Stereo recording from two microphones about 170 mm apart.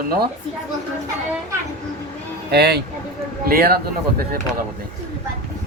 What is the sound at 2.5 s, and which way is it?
Speech, 75° right (ahead or behind).